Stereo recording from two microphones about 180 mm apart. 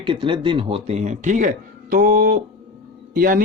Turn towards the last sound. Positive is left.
turn(degrees=-50)  # may be behind; listen again after turning